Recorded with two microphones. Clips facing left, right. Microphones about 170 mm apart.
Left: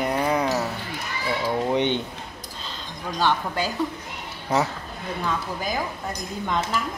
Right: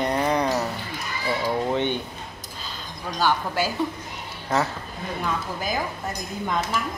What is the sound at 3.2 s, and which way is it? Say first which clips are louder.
Speech: even; 5° right (ahead or behind).